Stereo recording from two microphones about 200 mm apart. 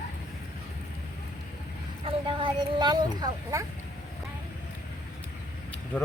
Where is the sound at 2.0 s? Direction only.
25° right (ahead or behind).